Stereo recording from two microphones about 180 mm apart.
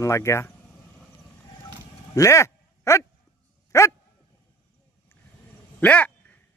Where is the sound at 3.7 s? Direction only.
15° left (ahead or behind).